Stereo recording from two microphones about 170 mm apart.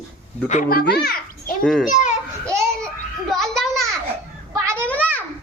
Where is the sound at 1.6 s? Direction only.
5° left (ahead or behind).